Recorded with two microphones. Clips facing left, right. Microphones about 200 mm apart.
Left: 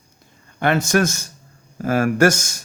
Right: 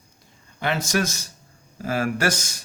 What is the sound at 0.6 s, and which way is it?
Speech, 55° left (ahead or behind).